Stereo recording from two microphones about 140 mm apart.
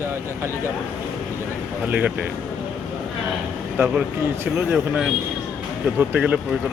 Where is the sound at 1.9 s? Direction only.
10° right (ahead or behind).